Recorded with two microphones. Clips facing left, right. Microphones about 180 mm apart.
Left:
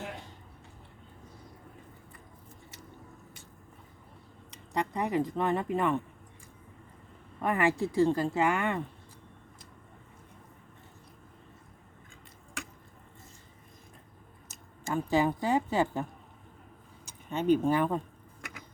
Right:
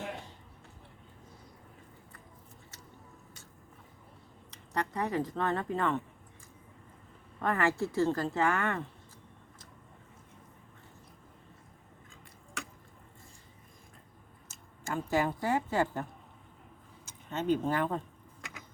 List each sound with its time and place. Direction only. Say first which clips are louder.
4.7 s speech: left 2 dB; 15° left (ahead or behind)
7.4 s speech: left 2 dB; 15° left (ahead or behind)
14.4 s speech: left 3 dB; 15° left (ahead or behind)
17.1 s speech: left 4 dB; 15° left (ahead or behind)